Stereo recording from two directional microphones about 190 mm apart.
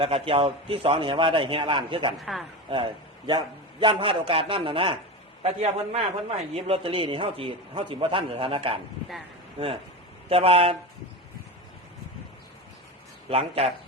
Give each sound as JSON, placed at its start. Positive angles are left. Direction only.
{"t": 0.0, "sound": "a man's voice", "side_deg": -30}
{"t": 2.2, "sound": "a woman's voice", "side_deg": 0}
{"t": 2.6, "sound": "a man's voice", "side_deg": -25}
{"t": 10.2, "sound": "a man's voice", "side_deg": -30}
{"t": 13.3, "sound": "a man's voice", "side_deg": -30}